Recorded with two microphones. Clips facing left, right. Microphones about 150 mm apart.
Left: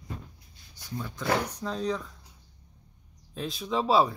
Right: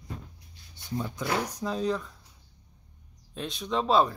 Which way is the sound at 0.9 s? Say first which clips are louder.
Left 1 dB; 15° right (ahead or behind).